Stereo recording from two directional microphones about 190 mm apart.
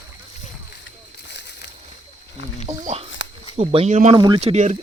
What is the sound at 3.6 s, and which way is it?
Speech, 35° right (ahead or behind).